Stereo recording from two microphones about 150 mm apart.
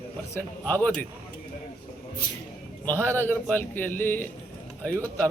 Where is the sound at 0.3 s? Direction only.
10° left (ahead or behind).